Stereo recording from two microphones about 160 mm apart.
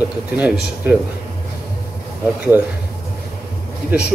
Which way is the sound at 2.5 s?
10° right (ahead or behind).